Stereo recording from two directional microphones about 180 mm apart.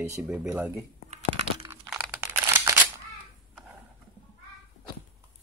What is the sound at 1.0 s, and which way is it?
Crumpling, 40° right (ahead or behind).